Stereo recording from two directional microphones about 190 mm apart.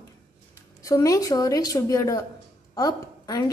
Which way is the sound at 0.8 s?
15° left (ahead or behind).